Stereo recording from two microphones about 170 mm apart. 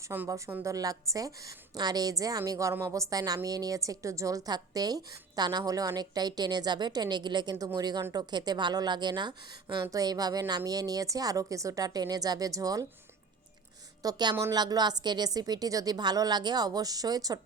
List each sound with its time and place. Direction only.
0.0 s a woman's voice: 15° right (ahead or behind)
14.0 s a woman's voice: 25° right (ahead or behind)